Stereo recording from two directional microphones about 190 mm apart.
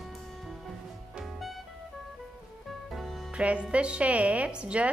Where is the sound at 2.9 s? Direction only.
5° right (ahead or behind).